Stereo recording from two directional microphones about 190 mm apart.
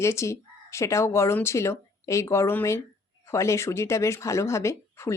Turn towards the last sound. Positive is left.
turn(degrees=15)  # may be behind; listen again after turning